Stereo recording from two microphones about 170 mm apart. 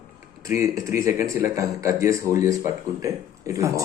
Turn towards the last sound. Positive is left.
turn(degrees=-20)  # may be behind; listen again after turning